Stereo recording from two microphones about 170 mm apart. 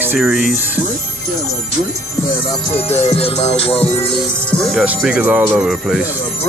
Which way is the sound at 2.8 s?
35° left (ahead or behind).